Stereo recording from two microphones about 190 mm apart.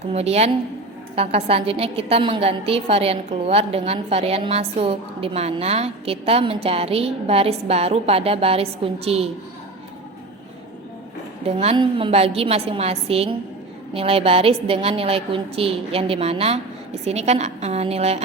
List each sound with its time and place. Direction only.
0.1 s a woman's voice: 30° right (ahead or behind)
11.4 s a woman's voice: 30° right (ahead or behind)